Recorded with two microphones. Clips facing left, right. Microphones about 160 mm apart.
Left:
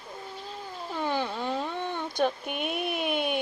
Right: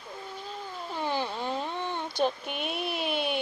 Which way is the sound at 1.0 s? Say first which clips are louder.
Left 1 dB; 55° left (ahead or behind).